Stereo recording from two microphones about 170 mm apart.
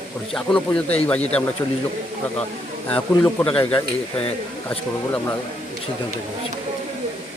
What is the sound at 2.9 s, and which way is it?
Speech, 10° left (ahead or behind).